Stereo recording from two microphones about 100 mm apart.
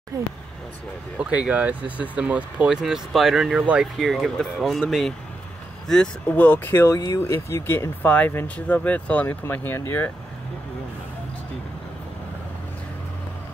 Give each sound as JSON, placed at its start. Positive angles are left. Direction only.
{"t": 0.1, "sound": "speech", "side_deg": -35}
{"t": 1.1, "sound": "speech", "side_deg": -10}